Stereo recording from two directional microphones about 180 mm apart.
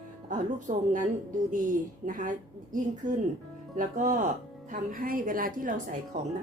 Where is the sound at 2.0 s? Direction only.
45° right (ahead or behind).